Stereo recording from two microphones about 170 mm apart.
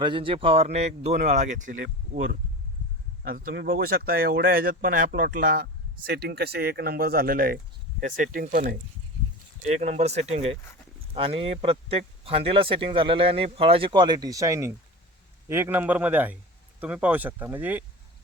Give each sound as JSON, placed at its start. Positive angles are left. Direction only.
{"t": 0.0, "sound": "speech", "side_deg": -30}
{"t": 3.2, "sound": "speech", "side_deg": -55}
{"t": 3.5, "sound": "speech", "side_deg": -75}
{"t": 6.1, "sound": "speech", "side_deg": -65}
{"t": 9.6, "sound": "speech", "side_deg": -40}